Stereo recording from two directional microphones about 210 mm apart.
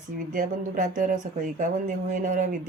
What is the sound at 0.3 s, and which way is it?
Speech, 35° right (ahead or behind).